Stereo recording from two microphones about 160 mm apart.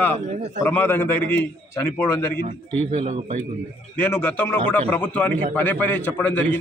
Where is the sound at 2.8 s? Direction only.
40° right (ahead or behind).